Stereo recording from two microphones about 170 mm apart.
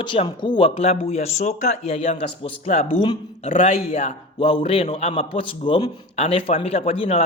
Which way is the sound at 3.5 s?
40° left (ahead or behind).